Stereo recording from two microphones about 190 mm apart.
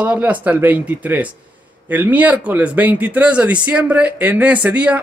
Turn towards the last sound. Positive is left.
turn(degrees=-5)  # may be behind; listen again after turning